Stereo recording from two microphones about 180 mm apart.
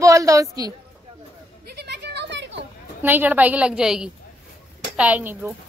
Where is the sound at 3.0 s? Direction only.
10° right (ahead or behind).